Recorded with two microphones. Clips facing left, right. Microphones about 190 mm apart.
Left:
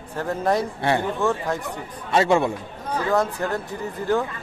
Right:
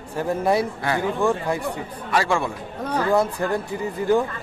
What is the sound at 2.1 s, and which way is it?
Speech, 20° left (ahead or behind).